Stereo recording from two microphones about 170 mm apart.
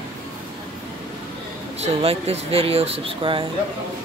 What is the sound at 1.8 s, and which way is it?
Speech, 35° right (ahead or behind).